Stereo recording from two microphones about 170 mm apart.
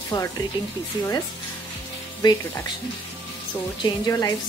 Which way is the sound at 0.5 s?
25° left (ahead or behind).